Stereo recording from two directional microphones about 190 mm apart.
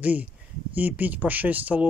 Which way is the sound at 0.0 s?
10° right (ahead or behind).